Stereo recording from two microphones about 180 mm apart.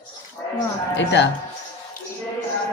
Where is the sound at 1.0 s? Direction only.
80° left.